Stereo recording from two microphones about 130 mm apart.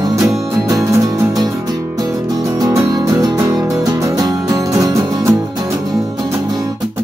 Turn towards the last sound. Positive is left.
turn(degrees=-25)  # may be behind; listen again after turning